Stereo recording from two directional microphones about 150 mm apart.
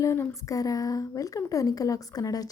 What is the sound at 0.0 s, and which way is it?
A woman's voice, 20° left (ahead or behind).